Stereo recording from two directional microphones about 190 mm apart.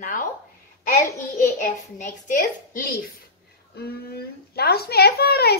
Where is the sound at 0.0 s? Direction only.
45° left (ahead or behind).